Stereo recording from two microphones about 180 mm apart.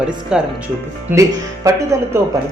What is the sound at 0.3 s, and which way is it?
Speech, 5° right (ahead or behind).